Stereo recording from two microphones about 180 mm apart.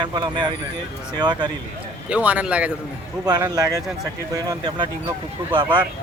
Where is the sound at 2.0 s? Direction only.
5° right (ahead or behind).